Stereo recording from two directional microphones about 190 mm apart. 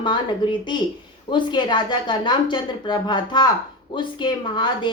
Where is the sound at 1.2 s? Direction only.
25° left (ahead or behind).